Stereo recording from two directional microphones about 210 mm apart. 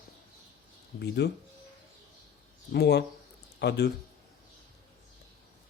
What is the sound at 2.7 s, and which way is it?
Speech, 50° left (ahead or behind).